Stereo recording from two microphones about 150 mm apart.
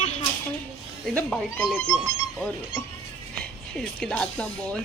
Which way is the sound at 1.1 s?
10° left (ahead or behind).